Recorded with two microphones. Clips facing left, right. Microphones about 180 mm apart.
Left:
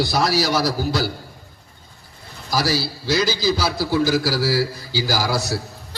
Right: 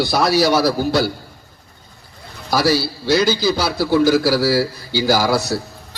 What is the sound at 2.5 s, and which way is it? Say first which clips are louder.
A man's voice: right 5 dB; 60° right (ahead or behind).